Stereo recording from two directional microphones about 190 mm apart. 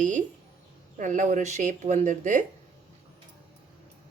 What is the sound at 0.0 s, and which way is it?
Speech, 40° right (ahead or behind).